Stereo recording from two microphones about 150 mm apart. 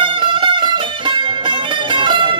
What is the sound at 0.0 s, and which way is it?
Music, 35° right (ahead or behind).